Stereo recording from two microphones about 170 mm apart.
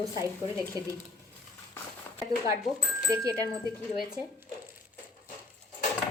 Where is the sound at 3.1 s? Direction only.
20° right (ahead or behind).